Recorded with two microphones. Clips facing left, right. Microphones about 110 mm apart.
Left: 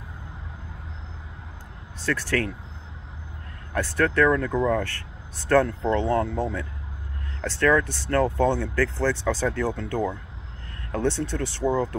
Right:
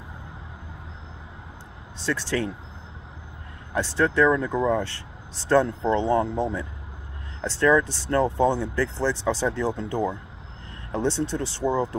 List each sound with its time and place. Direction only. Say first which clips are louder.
2.0 s speech: even; 20° right (ahead or behind)
3.7 s speech: even; 20° right (ahead or behind)